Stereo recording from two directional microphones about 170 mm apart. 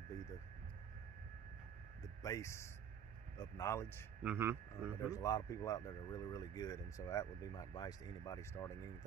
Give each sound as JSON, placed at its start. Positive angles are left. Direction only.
{"t": 2.2, "sound": "speech", "side_deg": 15}
{"t": 4.2, "sound": "speech", "side_deg": -10}
{"t": 5.1, "sound": "speech", "side_deg": 20}